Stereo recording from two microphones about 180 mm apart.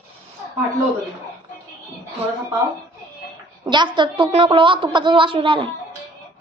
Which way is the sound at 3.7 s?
25° right (ahead or behind).